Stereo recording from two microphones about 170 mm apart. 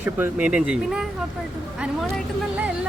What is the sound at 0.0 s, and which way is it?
Speech, 10° right (ahead or behind).